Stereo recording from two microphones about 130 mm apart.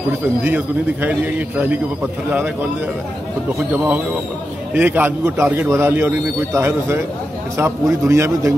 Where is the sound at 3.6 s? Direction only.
10° right (ahead or behind).